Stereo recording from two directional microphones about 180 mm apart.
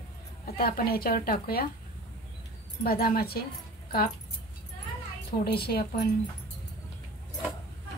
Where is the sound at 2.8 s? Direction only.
55° left (ahead or behind).